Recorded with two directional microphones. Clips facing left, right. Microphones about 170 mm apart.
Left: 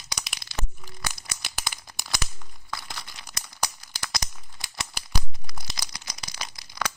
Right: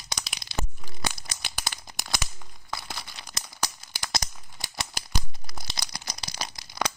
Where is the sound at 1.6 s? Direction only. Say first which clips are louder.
Right 1 dB; 20° right (ahead or behind).